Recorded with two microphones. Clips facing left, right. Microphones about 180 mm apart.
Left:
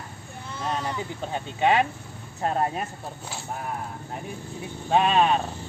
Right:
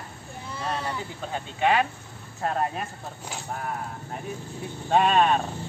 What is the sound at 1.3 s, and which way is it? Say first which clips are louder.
Speech: left 1 dB; 20° left (ahead or behind).